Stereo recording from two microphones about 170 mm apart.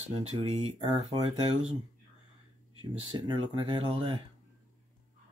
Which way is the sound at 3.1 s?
30° right (ahead or behind).